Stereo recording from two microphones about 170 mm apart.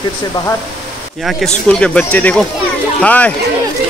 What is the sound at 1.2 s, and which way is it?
Speech, 5° left (ahead or behind).